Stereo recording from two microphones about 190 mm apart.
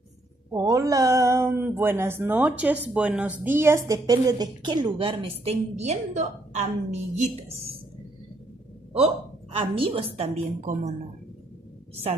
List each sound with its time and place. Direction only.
0.5 s speech: 15° right (ahead or behind); by 7.7 s 35° right (ahead or behind)
9.5 s a woman's voice: 30° right (ahead or behind)